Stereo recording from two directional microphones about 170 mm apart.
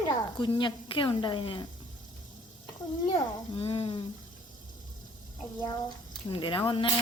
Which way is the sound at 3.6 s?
35° left (ahead or behind).